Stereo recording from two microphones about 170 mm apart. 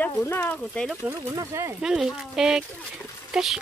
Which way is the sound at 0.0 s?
15° left (ahead or behind).